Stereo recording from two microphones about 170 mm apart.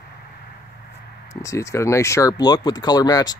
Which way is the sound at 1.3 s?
20° left (ahead or behind).